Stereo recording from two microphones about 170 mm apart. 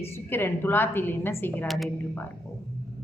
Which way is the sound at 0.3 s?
10° left (ahead or behind).